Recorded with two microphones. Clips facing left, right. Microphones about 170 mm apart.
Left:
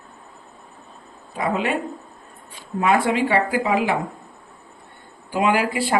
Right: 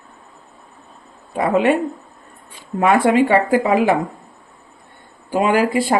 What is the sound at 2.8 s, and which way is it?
Speech, 55° right (ahead or behind).